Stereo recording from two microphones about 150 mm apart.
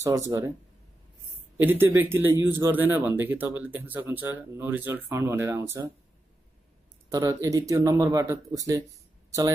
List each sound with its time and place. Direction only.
0.0 s speech: 20° right (ahead or behind)
1.6 s speech: 15° right (ahead or behind)
7.1 s speech: 25° right (ahead or behind)